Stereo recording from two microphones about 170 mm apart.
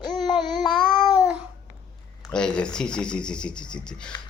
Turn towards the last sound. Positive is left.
turn(degrees=5)  # may be behind; listen again after turning